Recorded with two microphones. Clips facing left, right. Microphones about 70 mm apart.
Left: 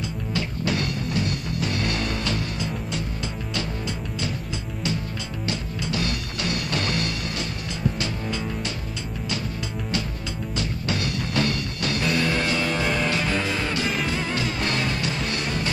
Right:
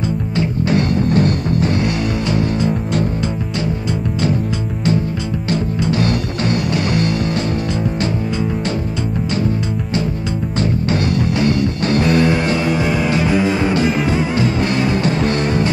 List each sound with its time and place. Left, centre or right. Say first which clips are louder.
0.4 s music: right 9 dB; right
1.8 s music: right 8 dB; centre
5.5 s music: right 11 dB; right
6.7 s music: right 8 dB; centre
10.6 s music: right 10 dB; right; by 15.0 s centre
15.0 s music: right 11 dB; right